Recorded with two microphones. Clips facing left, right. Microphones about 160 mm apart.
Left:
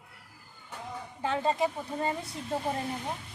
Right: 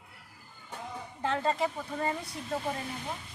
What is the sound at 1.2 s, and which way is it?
Speech, 15° left (ahead or behind).